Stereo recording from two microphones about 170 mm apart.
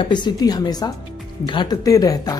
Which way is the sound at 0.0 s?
25° left (ahead or behind).